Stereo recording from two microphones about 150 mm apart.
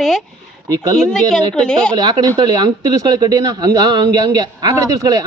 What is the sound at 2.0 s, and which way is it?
Speech, 30° right (ahead or behind).